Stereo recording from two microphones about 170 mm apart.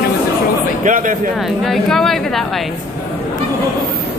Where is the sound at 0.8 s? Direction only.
50° right (ahead or behind).